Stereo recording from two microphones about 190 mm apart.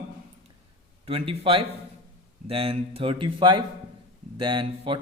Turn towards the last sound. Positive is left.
turn(degrees=-30)  # may be behind; listen again after turning